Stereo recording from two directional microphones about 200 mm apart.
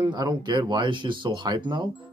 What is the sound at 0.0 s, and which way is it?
Speech, 20° right (ahead or behind).